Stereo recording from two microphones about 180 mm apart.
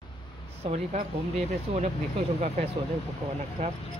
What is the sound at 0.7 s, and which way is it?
Speech, 35° right (ahead or behind).